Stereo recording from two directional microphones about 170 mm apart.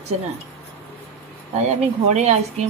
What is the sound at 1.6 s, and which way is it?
Speech, 40° right (ahead or behind).